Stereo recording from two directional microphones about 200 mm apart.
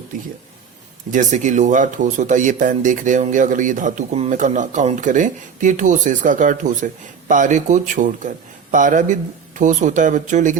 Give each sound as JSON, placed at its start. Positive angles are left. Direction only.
{"t": 1.1, "sound": "speech", "side_deg": -35}